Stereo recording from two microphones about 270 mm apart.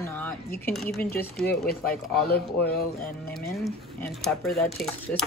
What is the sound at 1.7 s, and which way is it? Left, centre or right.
Speech, left.